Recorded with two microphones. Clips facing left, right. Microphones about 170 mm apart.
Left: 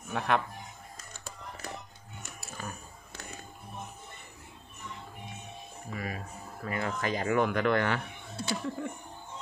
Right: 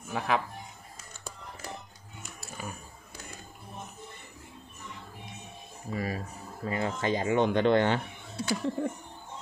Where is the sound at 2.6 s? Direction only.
10° right (ahead or behind).